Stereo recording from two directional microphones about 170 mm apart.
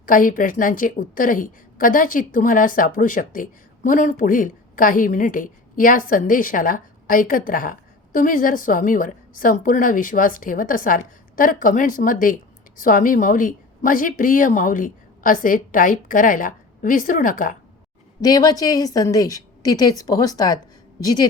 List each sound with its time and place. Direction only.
0.0 s a woman's voice: 55° left (ahead or behind)
18.2 s a woman's voice: 20° left (ahead or behind)